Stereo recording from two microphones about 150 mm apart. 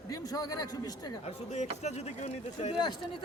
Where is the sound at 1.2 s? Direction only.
50° left (ahead or behind).